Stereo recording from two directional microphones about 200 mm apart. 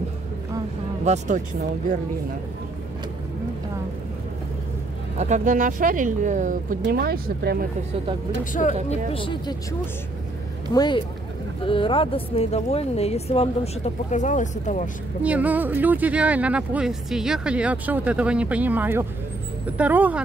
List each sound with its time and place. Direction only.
1.0 s speech: 35° right (ahead or behind)
5.1 s speech: 35° right (ahead or behind)
9.1 s speech: 25° left (ahead or behind)
10.7 s speech: 20° left (ahead or behind); by 14.9 s 40° left (ahead or behind)
15.2 s speech: 5° right (ahead or behind)